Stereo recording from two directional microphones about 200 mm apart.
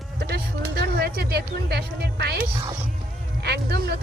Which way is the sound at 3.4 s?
55° right (ahead or behind).